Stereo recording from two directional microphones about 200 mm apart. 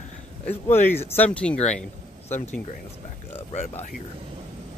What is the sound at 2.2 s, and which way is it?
Speech, 35° left (ahead or behind).